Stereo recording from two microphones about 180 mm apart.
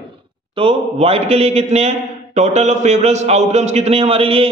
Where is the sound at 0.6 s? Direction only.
35° right (ahead or behind).